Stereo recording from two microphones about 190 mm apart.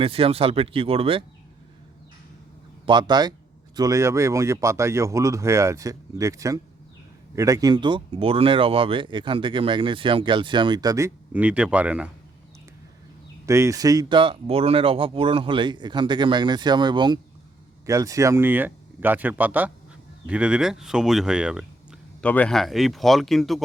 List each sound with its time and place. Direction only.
0.0 s speech: 30° right (ahead or behind)
2.8 s speech: 25° right (ahead or behind); by 12.1 s 5° right (ahead or behind)
13.4 s speech: 15° right (ahead or behind)
22.2 s speech: 5° left (ahead or behind)